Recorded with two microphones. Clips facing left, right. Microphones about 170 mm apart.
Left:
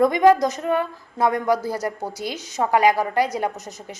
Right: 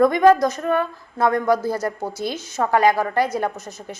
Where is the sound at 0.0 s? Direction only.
15° left (ahead or behind).